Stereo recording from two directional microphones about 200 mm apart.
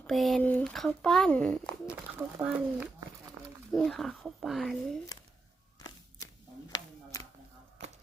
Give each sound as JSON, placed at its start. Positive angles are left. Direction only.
{"t": 0.1, "sound": "speech", "side_deg": 0}
{"t": 1.9, "sound": "speech", "side_deg": -5}
{"t": 6.7, "sound": "a sound", "side_deg": 15}